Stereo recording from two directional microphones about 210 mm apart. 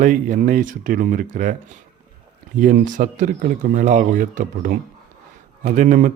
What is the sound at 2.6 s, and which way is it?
Speech, 40° right (ahead or behind).